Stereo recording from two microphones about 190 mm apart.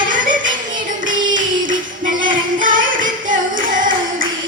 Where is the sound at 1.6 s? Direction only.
45° right (ahead or behind).